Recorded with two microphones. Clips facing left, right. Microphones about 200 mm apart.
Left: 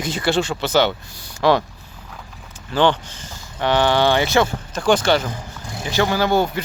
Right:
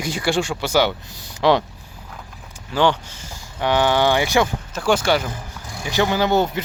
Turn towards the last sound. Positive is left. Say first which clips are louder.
# even
turn(degrees=-20)  # may be behind; listen again after turning